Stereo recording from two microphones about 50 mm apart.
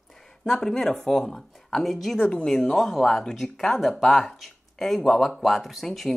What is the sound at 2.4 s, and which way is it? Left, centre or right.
A woman's voice, centre.